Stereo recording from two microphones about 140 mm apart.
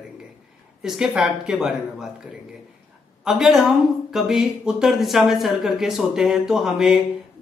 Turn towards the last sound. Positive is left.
turn(degrees=-5)  # may be behind; listen again after turning